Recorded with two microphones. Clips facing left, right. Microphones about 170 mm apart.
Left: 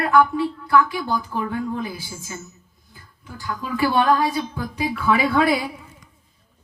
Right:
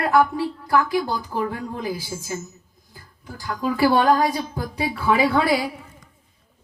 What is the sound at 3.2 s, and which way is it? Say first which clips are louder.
Speech: right 5 dB; 35° right (ahead or behind).